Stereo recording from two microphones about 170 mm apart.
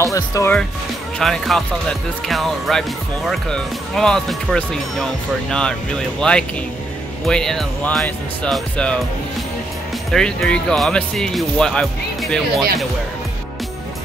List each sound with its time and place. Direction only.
0.0 s speech: 20° left (ahead or behind)
1.2 s speech: centre (ahead or behind)
10.1 s speech: 5° left (ahead or behind)